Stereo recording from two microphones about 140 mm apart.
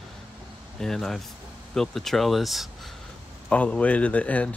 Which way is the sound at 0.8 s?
5° left (ahead or behind).